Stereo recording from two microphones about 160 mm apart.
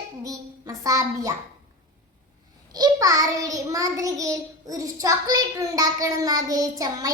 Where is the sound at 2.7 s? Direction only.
25° right (ahead or behind).